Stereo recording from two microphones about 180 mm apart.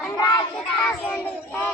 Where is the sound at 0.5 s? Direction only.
5° left (ahead or behind).